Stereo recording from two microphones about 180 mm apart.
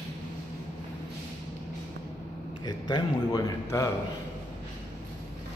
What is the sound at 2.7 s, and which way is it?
Speech, 25° left (ahead or behind).